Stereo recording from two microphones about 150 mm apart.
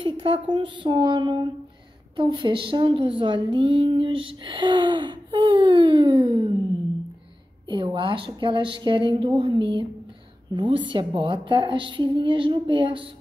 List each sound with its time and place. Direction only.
0.0 s speech: 35° right (ahead or behind)
7.6 s speech: 35° right (ahead or behind)